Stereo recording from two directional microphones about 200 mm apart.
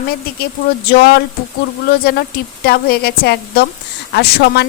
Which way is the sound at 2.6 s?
50° left (ahead or behind).